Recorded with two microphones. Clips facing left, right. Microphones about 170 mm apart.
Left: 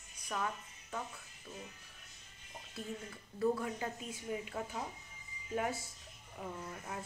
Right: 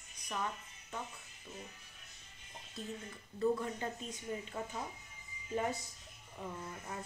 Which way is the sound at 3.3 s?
5° left (ahead or behind).